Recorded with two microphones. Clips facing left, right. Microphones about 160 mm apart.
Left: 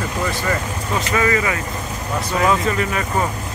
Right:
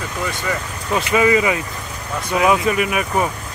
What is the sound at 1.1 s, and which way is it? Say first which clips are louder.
Speech: right 4 dB; 15° right (ahead or behind).